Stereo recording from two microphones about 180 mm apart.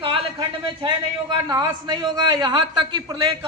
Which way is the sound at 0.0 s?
30° right (ahead or behind).